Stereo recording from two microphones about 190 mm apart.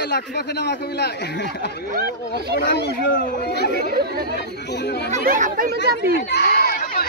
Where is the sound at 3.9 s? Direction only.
55° right (ahead or behind).